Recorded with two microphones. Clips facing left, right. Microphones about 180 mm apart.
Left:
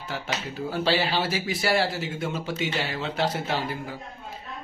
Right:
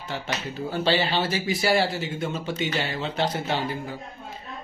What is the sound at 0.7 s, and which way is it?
Speech, 5° left (ahead or behind).